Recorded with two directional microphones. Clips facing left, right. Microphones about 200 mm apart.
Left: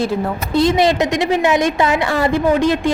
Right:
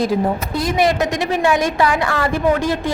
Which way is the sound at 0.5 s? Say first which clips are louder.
Left 5 dB; 25° left (ahead or behind).